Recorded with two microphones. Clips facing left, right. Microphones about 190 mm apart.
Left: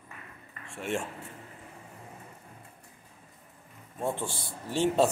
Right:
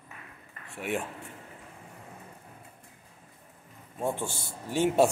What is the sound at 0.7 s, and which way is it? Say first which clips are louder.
Speech: even; 5° right (ahead or behind).